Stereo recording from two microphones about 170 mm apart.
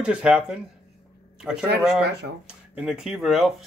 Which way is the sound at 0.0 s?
5° right (ahead or behind).